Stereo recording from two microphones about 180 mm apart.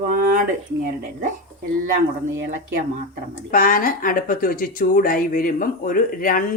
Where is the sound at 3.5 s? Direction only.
50° left (ahead or behind).